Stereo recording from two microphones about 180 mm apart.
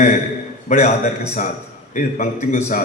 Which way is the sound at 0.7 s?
40° left (ahead or behind).